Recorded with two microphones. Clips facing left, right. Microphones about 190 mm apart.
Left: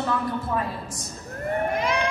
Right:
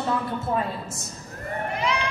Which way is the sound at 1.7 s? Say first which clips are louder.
Left 2 dB; 50° left (ahead or behind).